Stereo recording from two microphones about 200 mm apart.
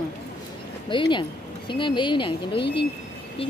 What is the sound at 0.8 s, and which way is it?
Speech, 25° left (ahead or behind).